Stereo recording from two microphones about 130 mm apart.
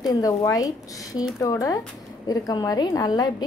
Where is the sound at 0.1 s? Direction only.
30° left (ahead or behind).